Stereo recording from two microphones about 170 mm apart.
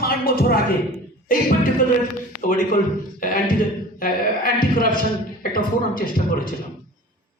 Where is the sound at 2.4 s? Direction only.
55° left (ahead or behind).